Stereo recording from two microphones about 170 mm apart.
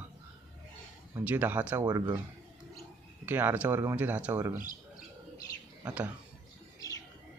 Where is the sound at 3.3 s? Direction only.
10° right (ahead or behind).